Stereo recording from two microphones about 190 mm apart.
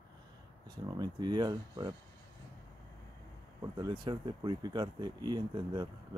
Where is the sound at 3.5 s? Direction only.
20° right (ahead or behind).